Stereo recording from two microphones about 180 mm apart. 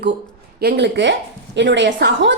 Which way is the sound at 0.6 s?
75° right (ahead or behind).